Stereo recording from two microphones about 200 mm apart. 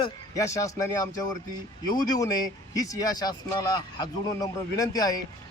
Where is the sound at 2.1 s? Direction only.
20° left (ahead or behind).